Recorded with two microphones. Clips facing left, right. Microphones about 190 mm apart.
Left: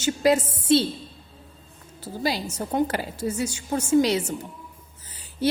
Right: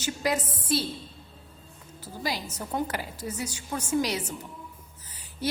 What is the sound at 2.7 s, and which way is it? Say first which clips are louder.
Speech: left 6 dB; 30° left (ahead or behind).